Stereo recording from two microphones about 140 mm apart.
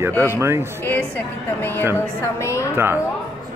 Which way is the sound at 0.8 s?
15° left (ahead or behind).